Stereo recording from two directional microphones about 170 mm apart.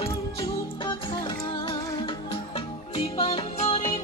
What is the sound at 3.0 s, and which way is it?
Music, 35° left (ahead or behind).